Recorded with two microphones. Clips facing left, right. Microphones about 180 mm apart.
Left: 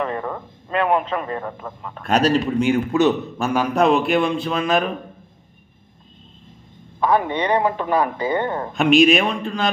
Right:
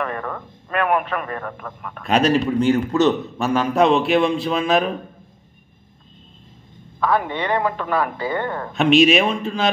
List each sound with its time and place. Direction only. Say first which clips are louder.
0.0 s a man's voice: left 2 dB; 20° left (ahead or behind)
3.3 s a man's voice: right 1 dB; centre (ahead or behind)
7.0 s speech: left 2 dB; 20° left (ahead or behind)
8.7 s a man's voice: even; centre (ahead or behind)